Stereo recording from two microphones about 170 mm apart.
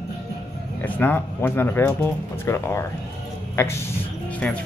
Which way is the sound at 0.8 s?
10° left (ahead or behind).